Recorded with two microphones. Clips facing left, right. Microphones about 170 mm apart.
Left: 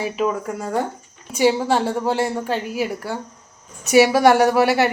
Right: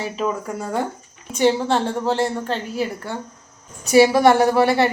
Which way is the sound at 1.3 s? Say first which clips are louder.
Even; 10° left (ahead or behind).